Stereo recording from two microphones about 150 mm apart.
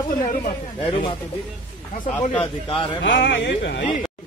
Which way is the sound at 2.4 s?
35° left (ahead or behind).